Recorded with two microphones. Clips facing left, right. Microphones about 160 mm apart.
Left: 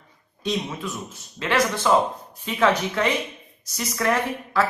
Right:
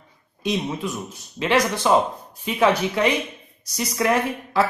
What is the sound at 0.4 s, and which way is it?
A woman's voice, 15° right (ahead or behind).